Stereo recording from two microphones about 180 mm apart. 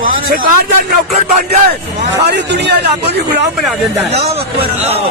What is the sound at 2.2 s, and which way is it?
A man's voice, 70° right (ahead or behind).